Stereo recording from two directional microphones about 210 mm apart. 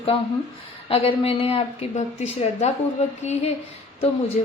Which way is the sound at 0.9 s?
25° left (ahead or behind).